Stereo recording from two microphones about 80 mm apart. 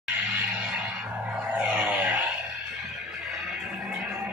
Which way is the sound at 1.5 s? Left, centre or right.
Centre.